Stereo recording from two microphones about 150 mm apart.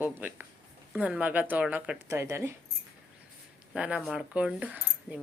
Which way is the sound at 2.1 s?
20° right (ahead or behind).